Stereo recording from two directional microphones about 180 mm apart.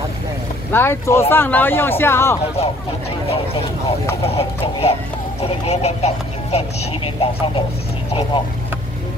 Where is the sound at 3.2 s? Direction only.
30° left (ahead or behind).